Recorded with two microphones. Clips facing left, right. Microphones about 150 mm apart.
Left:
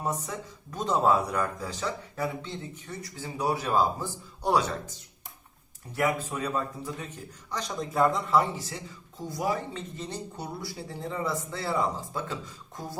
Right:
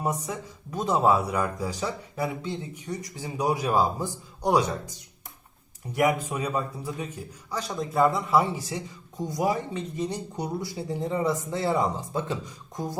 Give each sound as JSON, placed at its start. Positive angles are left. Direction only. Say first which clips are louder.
{"t": 0.0, "sound": "speech", "louder": "right 3 dB", "side_deg": -10}